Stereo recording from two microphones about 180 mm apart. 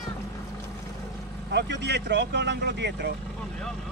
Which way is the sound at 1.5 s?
70° right (ahead or behind).